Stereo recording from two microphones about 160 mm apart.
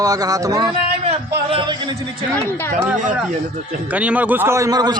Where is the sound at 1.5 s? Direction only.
35° right (ahead or behind).